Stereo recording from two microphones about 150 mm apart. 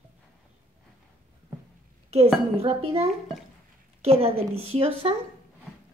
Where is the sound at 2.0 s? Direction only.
45° right (ahead or behind).